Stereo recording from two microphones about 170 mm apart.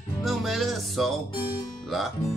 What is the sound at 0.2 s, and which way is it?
Speech, centre (ahead or behind).